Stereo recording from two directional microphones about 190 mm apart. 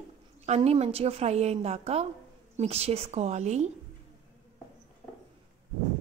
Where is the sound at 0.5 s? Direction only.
35° right (ahead or behind).